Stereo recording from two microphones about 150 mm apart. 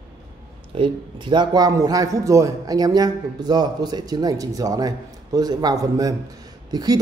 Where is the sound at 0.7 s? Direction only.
35° right (ahead or behind).